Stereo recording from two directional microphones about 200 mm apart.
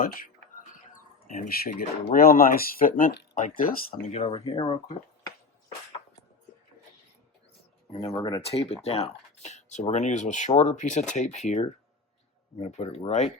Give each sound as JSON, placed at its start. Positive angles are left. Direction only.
{"t": 0.9, "sound": "a sound", "side_deg": 45}
{"t": 2.1, "sound": "speech", "side_deg": 45}
{"t": 7.9, "sound": "speech", "side_deg": 15}
{"t": 8.4, "sound": "speech", "side_deg": 30}